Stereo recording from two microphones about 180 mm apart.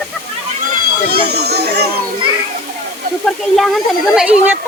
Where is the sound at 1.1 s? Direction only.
65° right (ahead or behind).